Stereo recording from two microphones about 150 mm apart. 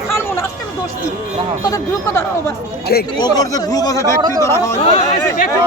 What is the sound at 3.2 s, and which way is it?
Speech, 25° left (ahead or behind).